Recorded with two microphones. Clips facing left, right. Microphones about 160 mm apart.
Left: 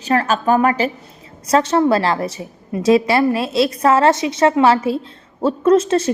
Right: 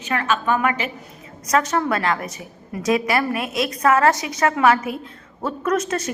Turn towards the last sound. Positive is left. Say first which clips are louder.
# left 8 dB
turn(degrees=30)  # may be behind; listen again after turning